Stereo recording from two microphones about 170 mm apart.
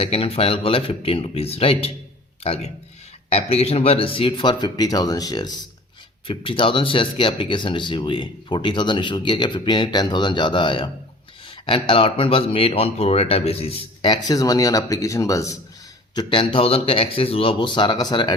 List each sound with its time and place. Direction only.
0.0 s speech: 35° left (ahead or behind)